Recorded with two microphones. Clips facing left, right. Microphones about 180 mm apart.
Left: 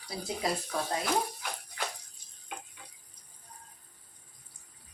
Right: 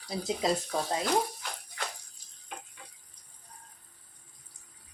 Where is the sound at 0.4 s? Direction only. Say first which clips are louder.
Right 4 dB; 20° right (ahead or behind).